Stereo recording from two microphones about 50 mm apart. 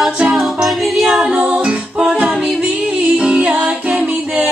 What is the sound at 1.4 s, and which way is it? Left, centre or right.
Music, right.